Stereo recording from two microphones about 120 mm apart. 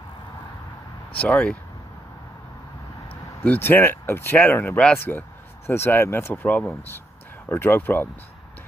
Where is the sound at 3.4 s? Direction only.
15° left (ahead or behind).